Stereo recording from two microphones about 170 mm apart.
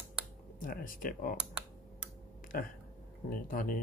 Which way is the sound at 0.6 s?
55° left (ahead or behind).